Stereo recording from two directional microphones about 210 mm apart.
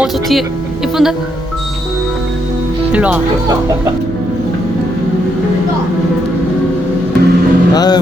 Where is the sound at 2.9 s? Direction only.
5° right (ahead or behind).